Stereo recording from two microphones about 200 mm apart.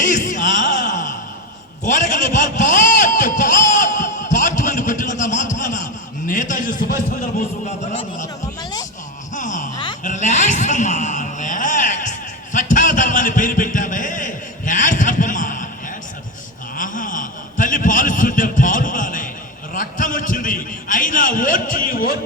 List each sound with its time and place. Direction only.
0.0 s music: 40° left (ahead or behind)
1.8 s vehicle: 40° left (ahead or behind)
6.2 s a man's voice: 40° left (ahead or behind)
9.3 s a sound: 40° left (ahead or behind)
16.7 s a sound: 40° left (ahead or behind)
19.7 s a man's voice: 40° left (ahead or behind)